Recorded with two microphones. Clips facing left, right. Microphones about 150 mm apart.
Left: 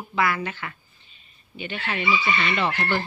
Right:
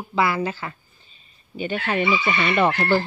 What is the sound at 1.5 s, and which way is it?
Speech, 45° right (ahead or behind).